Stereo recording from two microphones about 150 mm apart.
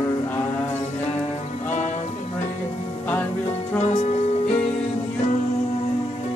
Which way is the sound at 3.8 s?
50° left (ahead or behind).